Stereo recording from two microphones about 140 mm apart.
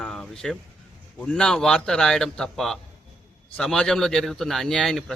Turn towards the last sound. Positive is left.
turn(degrees=5)  # may be behind; listen again after turning